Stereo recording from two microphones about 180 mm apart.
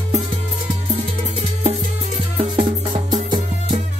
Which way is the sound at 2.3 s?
30° right (ahead or behind).